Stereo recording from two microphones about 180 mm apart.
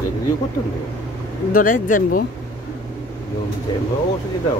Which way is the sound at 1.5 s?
50° left (ahead or behind).